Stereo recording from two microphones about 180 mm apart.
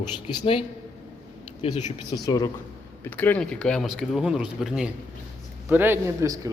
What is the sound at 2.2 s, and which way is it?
Speech, 20° left (ahead or behind).